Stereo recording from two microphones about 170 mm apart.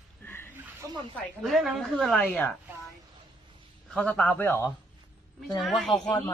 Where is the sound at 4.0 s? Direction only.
5° left (ahead or behind).